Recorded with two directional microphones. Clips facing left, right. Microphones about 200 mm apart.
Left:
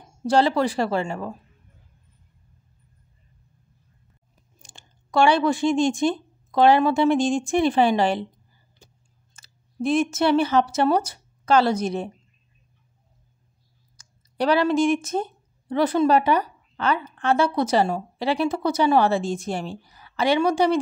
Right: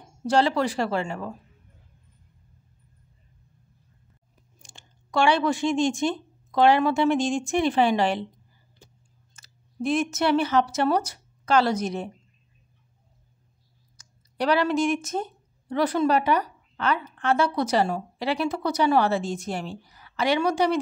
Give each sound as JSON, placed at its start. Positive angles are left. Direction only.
{"t": 0.3, "sound": "a woman's voice", "side_deg": 35}
{"t": 5.1, "sound": "a woman's voice", "side_deg": 35}
{"t": 9.3, "sound": "speech", "side_deg": 30}
{"t": 13.9, "sound": "a woman's voice", "side_deg": 30}